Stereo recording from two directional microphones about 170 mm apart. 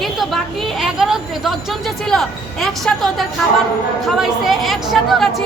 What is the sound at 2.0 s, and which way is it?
A woman's voice, centre (ahead or behind).